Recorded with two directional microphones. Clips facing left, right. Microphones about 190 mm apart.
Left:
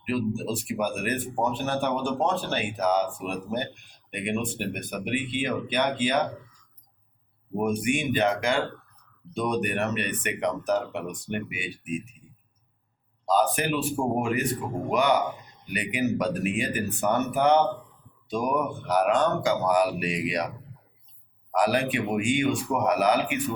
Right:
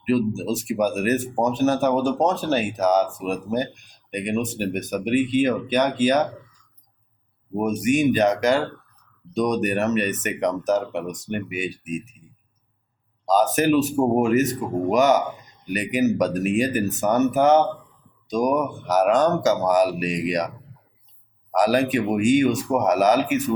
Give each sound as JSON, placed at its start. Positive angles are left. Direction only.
{"t": 0.1, "sound": "speech", "side_deg": -40}
{"t": 7.6, "sound": "speech", "side_deg": -40}
{"t": 13.2, "sound": "speech", "side_deg": -45}
{"t": 21.5, "sound": "speech", "side_deg": -45}